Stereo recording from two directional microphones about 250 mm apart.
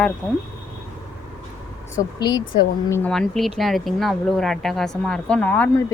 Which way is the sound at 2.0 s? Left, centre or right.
Centre.